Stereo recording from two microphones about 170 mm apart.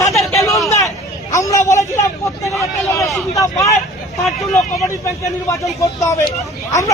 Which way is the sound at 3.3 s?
20° left (ahead or behind).